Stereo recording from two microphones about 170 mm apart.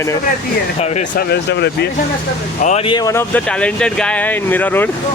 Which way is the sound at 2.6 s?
40° left (ahead or behind).